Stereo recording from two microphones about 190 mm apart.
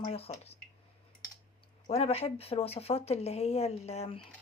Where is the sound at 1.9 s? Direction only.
30° left (ahead or behind).